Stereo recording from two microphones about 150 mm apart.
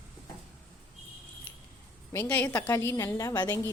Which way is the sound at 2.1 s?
15° left (ahead or behind).